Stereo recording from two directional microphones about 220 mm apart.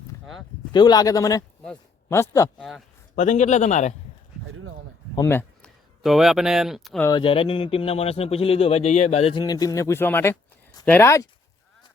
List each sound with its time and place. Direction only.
0.7 s speech: 20° left (ahead or behind)
1.6 s a sound: 10° left (ahead or behind)
2.3 s speech: 15° left (ahead or behind)
3.2 s a man's voice: 35° left (ahead or behind)
5.1 s speech: 10° left (ahead or behind)
7.0 s speech: 20° left (ahead or behind)